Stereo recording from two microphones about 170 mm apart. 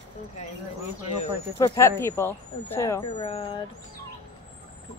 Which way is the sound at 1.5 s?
20° left (ahead or behind).